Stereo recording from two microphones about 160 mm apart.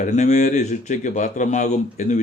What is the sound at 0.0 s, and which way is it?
A man's voice, 50° left (ahead or behind).